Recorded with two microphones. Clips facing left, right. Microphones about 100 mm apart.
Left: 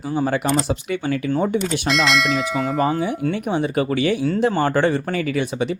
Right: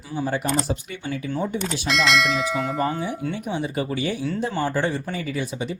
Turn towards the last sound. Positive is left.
turn(degrees=70)  # may be behind; listen again after turning